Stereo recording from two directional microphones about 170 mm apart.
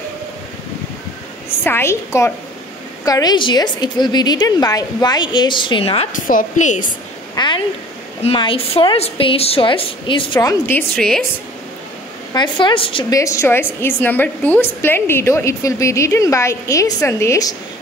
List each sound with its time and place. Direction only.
1.6 s a woman's voice: 15° left (ahead or behind); by 6.0 s 30° left (ahead or behind)
6.1 s a woman's voice: 50° left (ahead or behind)
7.3 s a sound: 25° left (ahead or behind)
8.2 s a woman's voice: 35° left (ahead or behind); by 11.2 s 5° left (ahead or behind)
12.4 s a woman's voice: 30° left (ahead or behind)
13.1 s a woman's voice: 20° left (ahead or behind)